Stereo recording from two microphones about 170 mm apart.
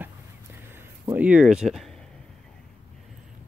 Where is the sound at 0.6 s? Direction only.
15° right (ahead or behind).